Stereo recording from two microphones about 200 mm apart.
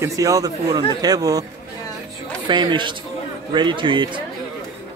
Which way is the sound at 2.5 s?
25° right (ahead or behind).